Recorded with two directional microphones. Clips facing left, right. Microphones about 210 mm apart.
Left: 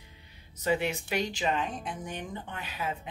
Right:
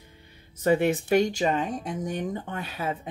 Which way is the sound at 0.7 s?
50° right (ahead or behind).